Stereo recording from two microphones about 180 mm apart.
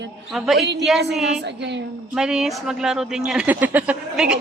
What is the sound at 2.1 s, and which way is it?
Speech, 5° right (ahead or behind).